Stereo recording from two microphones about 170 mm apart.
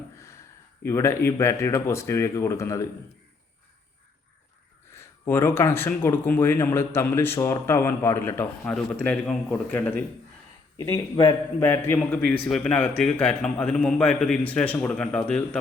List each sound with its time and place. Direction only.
0.9 s speech: 15° left (ahead or behind)
4.9 s speech: 15° left (ahead or behind)
10.8 s a man's voice: 20° left (ahead or behind)